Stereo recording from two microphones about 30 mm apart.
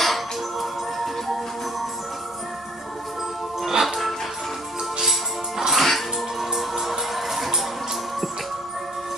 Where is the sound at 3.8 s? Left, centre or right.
Centre.